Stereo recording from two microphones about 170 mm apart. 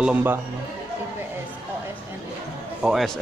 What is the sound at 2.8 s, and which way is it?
Speech, centre (ahead or behind).